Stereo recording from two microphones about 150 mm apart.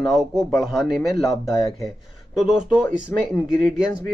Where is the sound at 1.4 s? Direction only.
20° left (ahead or behind).